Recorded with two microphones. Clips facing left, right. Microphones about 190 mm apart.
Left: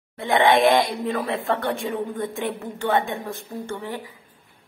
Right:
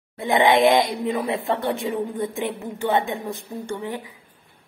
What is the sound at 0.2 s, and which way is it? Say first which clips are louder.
Speech: right 1 dB; 20° right (ahead or behind).